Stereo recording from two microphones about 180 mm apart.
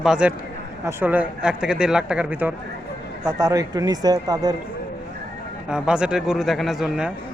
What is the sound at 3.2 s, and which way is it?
Speech, 20° right (ahead or behind).